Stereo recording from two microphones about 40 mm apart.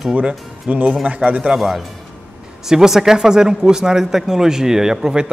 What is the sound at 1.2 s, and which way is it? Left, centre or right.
A man's voice, centre.